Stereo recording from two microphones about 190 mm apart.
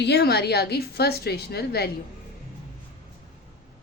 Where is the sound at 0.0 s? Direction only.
60° left (ahead or behind).